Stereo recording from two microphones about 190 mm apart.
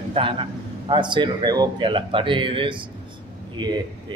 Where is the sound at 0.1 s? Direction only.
30° right (ahead or behind).